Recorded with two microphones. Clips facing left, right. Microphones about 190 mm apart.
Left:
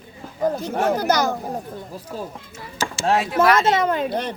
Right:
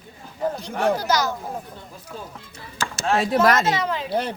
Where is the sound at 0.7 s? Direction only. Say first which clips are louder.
Even; 55° left (ahead or behind).